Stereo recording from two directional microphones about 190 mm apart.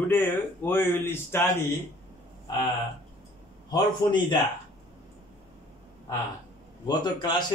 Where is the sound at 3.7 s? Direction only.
25° left (ahead or behind).